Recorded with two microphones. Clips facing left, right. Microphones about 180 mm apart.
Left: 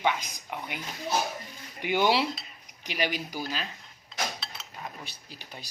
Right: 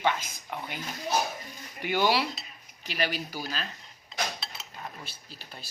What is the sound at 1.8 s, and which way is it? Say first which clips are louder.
Speech: left 1 dB; 15° left (ahead or behind).